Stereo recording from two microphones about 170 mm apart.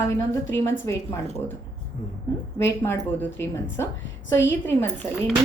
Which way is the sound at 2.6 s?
15° left (ahead or behind).